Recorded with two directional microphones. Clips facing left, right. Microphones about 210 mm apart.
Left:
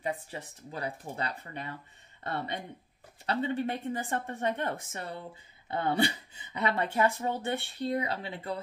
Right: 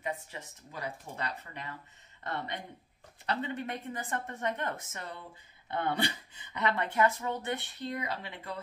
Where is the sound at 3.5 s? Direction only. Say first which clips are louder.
Left 5 dB; 30° left (ahead or behind).